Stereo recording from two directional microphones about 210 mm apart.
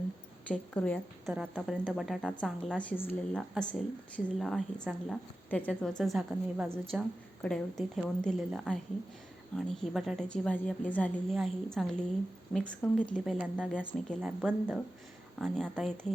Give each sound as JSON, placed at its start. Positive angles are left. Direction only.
{"t": 0.4, "sound": "a woman's voice", "side_deg": 5}